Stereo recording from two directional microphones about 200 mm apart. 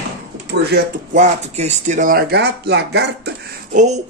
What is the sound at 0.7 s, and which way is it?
Speech, 40° right (ahead or behind).